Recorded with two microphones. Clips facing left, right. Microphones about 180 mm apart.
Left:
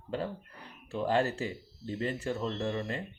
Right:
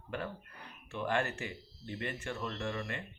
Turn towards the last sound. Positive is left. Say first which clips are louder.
# left 5 dB
turn(degrees=30)  # may be behind; listen again after turning